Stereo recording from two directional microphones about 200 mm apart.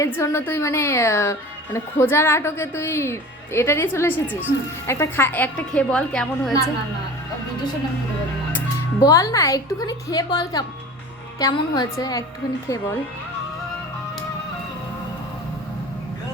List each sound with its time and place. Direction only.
0.0 s a woman's voice: 15° left (ahead or behind)
8.5 s a woman's voice: 15° left (ahead or behind)